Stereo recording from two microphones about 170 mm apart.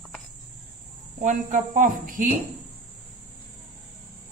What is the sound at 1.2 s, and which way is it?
Speech, 45° right (ahead or behind).